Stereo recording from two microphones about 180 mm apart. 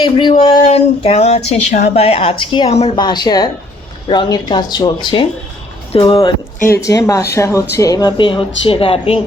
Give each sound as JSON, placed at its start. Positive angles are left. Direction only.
{"t": 0.0, "sound": "speech", "side_deg": 25}
{"t": 2.9, "sound": "speech", "side_deg": 25}
{"t": 6.7, "sound": "speech", "side_deg": 15}